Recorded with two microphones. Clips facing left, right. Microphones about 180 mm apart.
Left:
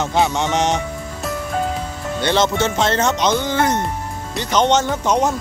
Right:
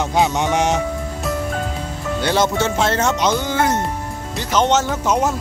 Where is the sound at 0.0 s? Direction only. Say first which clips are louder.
Even; 15° right (ahead or behind).